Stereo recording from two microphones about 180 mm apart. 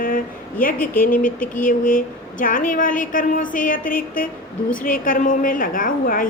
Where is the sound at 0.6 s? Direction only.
50° left (ahead or behind).